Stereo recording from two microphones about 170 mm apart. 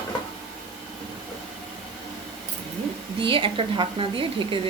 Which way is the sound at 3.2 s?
30° right (ahead or behind).